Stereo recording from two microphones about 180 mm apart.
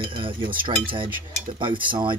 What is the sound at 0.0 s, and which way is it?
Cutlery, 30° right (ahead or behind).